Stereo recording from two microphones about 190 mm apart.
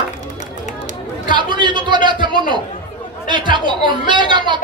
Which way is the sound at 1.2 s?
25° right (ahead or behind).